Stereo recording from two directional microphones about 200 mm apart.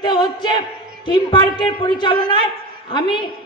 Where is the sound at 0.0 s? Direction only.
20° left (ahead or behind).